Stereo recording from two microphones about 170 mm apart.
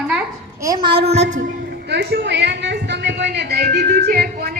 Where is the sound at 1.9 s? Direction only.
75° right (ahead or behind).